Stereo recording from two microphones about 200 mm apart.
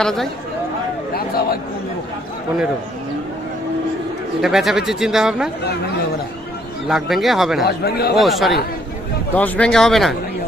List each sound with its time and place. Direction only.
0.0 s a man's voice: centre (ahead or behind)
4.4 s a man's voice: centre (ahead or behind)
6.8 s a man's voice: centre (ahead or behind)
7.9 s speech: 55° left (ahead or behind)
8.1 s a man's voice: centre (ahead or behind)